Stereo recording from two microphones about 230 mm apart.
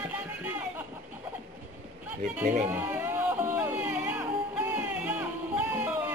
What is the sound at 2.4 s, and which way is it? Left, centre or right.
Speech, right.